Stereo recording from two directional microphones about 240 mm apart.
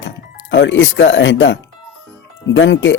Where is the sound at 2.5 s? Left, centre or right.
Left.